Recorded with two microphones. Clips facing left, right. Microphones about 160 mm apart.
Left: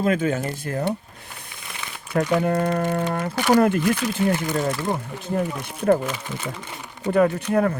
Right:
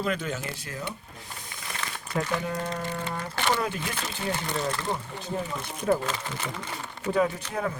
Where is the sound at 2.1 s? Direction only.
60° left (ahead or behind).